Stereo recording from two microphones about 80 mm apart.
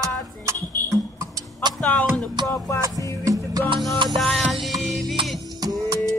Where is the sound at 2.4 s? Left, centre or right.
Left.